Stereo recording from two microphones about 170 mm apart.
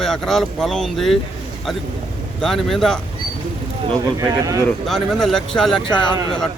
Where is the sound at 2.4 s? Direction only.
Centre (ahead or behind).